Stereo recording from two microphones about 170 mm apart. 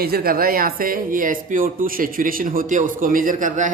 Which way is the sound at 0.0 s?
65° right (ahead or behind).